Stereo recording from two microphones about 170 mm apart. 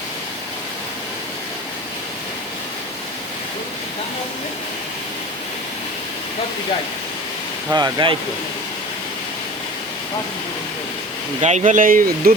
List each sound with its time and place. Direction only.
7.7 s speech: 25° right (ahead or behind)
11.3 s speech: 40° right (ahead or behind)